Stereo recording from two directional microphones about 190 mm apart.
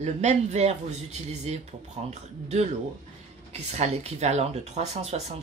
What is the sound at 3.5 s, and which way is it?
Speech, 35° right (ahead or behind).